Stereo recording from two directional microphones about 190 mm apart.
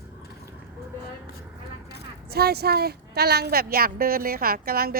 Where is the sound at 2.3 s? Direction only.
55° right (ahead or behind).